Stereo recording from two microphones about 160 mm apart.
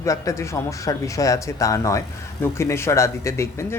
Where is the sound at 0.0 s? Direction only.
20° left (ahead or behind).